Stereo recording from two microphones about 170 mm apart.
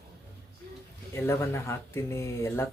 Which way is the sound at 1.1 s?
15° left (ahead or behind).